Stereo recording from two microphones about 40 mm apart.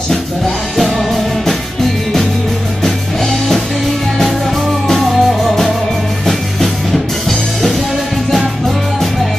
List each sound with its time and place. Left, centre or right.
0.7 s music: centre
2.8 s music: centre
4.9 s music: centre